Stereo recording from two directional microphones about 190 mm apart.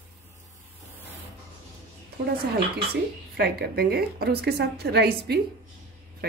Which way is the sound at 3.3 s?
55° right (ahead or behind).